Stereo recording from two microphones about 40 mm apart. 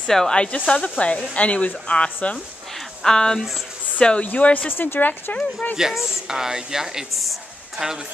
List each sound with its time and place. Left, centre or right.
0.0 s speech: centre
0.3 s speech: left
3.0 s a woman's voice: centre
4.0 s speech: left
4.3 s speech: left
4.6 s a woman's voice: left
5.3 s speech: left
5.8 s a woman's voice: centre